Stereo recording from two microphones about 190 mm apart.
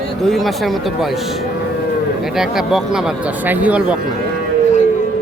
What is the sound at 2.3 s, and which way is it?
Speech, centre (ahead or behind).